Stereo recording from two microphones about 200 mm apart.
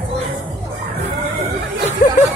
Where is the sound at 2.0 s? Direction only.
45° left (ahead or behind).